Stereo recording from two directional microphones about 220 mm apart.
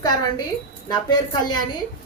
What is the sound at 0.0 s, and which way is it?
A woman's voice, 20° left (ahead or behind).